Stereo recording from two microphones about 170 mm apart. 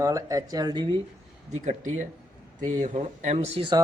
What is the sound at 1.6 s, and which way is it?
Speech, 45° right (ahead or behind).